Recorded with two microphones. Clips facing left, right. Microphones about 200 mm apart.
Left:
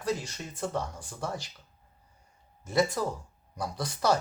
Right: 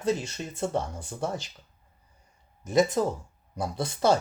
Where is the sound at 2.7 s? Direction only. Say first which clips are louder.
Right 4 dB; 20° right (ahead or behind).